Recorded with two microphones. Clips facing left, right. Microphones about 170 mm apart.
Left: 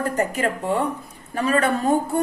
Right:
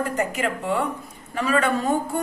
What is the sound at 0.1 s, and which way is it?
A woman's voice, 35° left (ahead or behind).